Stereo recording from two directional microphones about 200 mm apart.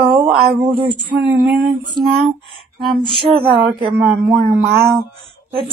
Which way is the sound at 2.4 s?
Centre (ahead or behind).